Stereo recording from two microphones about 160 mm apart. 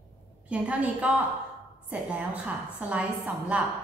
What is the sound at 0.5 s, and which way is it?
A woman's voice, 5° right (ahead or behind).